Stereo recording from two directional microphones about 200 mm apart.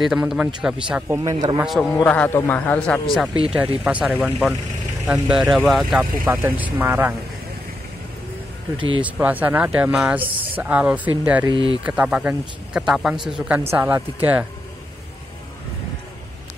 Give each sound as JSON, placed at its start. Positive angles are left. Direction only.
{"t": 0.0, "sound": "speech", "side_deg": -5}
{"t": 1.3, "sound": "a man's voice", "side_deg": -25}
{"t": 1.6, "sound": "a man's voice", "side_deg": 0}
{"t": 3.8, "sound": "speech", "side_deg": -5}
{"t": 9.0, "sound": "speech", "side_deg": -10}